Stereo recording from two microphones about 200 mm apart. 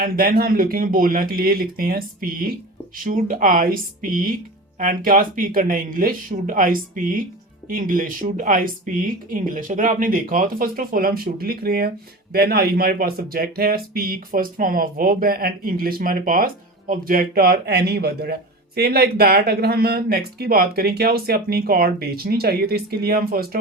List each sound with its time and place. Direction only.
0.0 s speech: 45° right (ahead or behind)